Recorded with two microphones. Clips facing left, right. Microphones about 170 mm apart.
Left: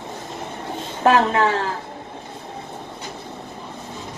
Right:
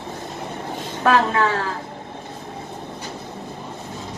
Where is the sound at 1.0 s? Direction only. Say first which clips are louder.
Left 2 dB; 30° left (ahead or behind).